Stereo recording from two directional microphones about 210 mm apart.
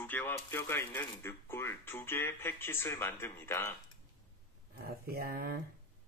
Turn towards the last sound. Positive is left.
turn(degrees=-45)  # may be behind; listen again after turning